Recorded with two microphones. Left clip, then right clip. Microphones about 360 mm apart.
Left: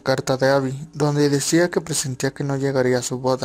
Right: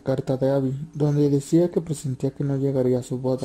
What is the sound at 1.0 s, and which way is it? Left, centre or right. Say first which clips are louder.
Speech: left 3 dB; left.